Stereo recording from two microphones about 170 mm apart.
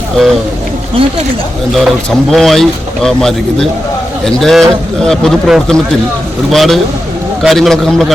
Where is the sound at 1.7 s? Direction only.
Centre (ahead or behind).